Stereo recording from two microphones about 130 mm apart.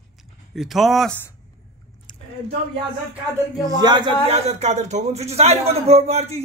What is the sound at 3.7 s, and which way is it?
Speech, 30° right (ahead or behind).